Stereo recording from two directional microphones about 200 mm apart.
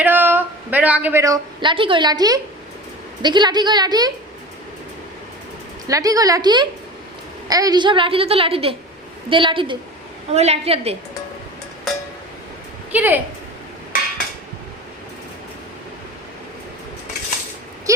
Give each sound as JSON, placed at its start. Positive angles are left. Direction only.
{"t": 0.0, "sound": "a woman's voice", "side_deg": -10}
{"t": 5.9, "sound": "a woman's voice", "side_deg": -15}
{"t": 12.9, "sound": "a woman's voice", "side_deg": -10}
{"t": 13.9, "sound": "a sound", "side_deg": 45}
{"t": 17.9, "sound": "speech", "side_deg": -15}